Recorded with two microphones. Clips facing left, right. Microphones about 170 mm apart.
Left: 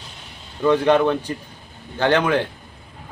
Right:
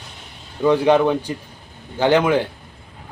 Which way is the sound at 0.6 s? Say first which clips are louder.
Right 1 dB; 10° right (ahead or behind).